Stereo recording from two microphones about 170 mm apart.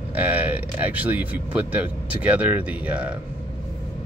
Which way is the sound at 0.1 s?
10° right (ahead or behind).